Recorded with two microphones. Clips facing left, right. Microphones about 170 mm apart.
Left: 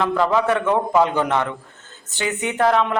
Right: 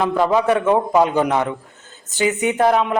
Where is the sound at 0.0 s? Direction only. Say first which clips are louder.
Right 2 dB; 15° right (ahead or behind).